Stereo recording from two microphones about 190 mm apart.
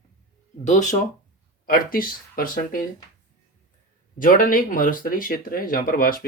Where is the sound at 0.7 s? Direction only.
40° left (ahead or behind).